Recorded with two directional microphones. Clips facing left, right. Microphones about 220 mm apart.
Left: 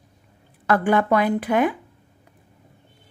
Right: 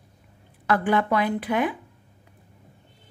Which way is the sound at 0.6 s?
45° left (ahead or behind).